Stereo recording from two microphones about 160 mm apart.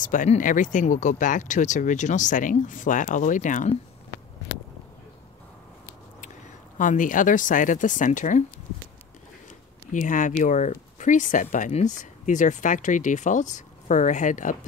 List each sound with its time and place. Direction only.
0.0 s speech: 55° left (ahead or behind)
6.8 s speech: 55° left (ahead or behind)
9.9 s speech: 55° left (ahead or behind)